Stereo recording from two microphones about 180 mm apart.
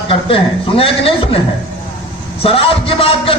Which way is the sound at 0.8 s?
30° left (ahead or behind).